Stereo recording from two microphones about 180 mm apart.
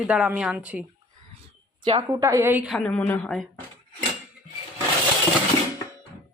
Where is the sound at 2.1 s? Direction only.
15° right (ahead or behind).